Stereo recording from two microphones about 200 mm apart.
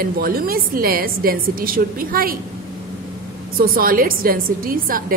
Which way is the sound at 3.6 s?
45° right (ahead or behind).